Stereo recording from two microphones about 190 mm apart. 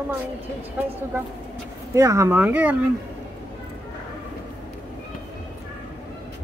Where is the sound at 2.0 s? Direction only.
15° right (ahead or behind).